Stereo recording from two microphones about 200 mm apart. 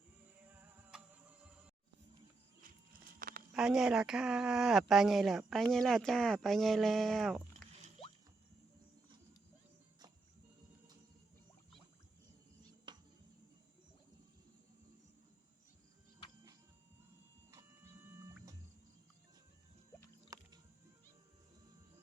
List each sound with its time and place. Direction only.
0.6 s music: 5° right (ahead or behind)
3.2 s a sound: 45° right (ahead or behind)
3.5 s speech: 5° right (ahead or behind)
12.9 s a sound: 25° right (ahead or behind)
17.5 s printer: 15° right (ahead or behind)
20.3 s music: 15° right (ahead or behind)